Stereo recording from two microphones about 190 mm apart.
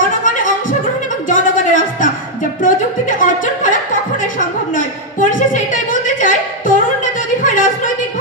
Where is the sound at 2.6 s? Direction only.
45° left (ahead or behind).